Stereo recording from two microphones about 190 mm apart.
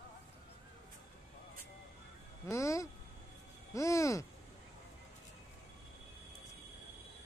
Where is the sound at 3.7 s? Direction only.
15° left (ahead or behind).